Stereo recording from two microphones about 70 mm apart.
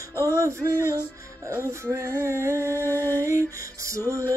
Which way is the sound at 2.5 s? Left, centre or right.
Left.